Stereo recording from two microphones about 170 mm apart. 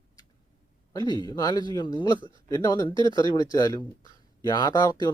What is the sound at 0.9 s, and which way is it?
Speech, 25° left (ahead or behind).